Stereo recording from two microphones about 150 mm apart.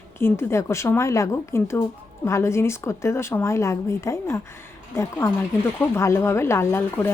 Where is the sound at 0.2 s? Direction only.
15° left (ahead or behind).